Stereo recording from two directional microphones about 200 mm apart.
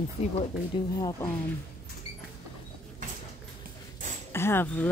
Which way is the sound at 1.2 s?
10° left (ahead or behind).